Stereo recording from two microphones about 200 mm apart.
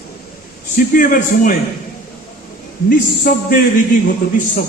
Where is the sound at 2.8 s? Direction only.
45° left (ahead or behind).